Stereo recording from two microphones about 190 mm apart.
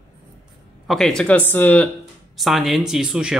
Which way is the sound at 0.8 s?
Centre (ahead or behind).